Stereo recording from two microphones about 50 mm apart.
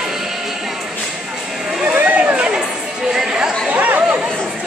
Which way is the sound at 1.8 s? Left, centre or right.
Right.